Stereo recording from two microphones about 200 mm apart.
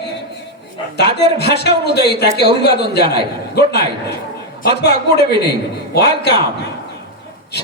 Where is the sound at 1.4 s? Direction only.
55° left (ahead or behind).